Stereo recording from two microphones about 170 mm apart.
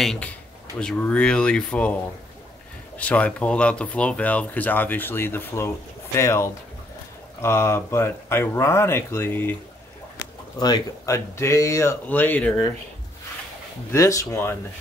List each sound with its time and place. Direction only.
0.0 s speech: 5° left (ahead or behind)
3.0 s speech: 10° left (ahead or behind)
10.6 s speech: 20° left (ahead or behind)
13.9 s speech: 20° left (ahead or behind)